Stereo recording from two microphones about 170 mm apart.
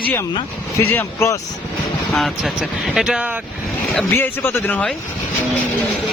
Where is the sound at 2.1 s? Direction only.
Centre (ahead or behind).